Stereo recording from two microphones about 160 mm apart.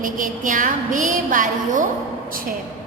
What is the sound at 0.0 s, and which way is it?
A woman's voice, 55° right (ahead or behind).